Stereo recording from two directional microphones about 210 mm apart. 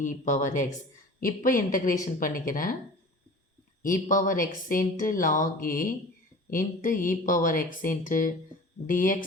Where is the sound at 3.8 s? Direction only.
40° left (ahead or behind).